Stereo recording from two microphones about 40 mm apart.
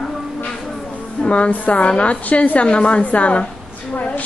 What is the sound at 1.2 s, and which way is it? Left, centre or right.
Speech, left.